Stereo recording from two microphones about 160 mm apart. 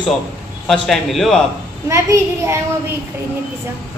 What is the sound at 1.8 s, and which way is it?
Speech, 15° right (ahead or behind).